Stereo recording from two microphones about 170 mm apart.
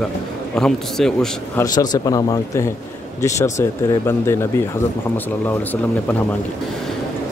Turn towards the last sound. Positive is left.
turn(degrees=10)  # may be behind; listen again after turning